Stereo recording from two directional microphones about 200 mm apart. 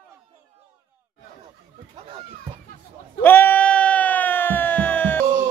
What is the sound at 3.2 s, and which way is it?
Bleat, 10° left (ahead or behind).